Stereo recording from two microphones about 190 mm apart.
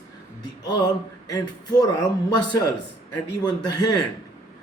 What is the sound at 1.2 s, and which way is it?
Speech, 20° left (ahead or behind).